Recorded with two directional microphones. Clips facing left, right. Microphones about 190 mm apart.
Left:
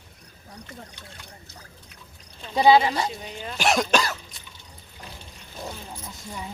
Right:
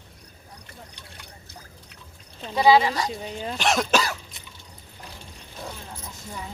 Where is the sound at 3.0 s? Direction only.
35° right (ahead or behind).